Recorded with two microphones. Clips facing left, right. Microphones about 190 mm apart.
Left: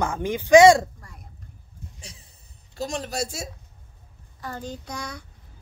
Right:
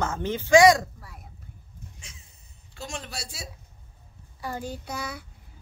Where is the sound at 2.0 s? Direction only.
35° left (ahead or behind).